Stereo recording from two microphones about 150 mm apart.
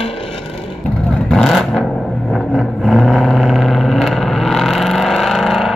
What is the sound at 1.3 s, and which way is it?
Vehicle, centre (ahead or behind).